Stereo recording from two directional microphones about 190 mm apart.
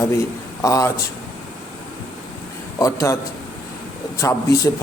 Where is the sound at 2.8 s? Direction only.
15° left (ahead or behind).